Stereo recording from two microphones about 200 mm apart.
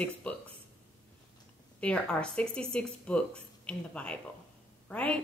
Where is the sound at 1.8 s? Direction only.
5° left (ahead or behind).